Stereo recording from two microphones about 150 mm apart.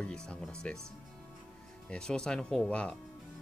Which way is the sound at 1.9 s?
5° left (ahead or behind).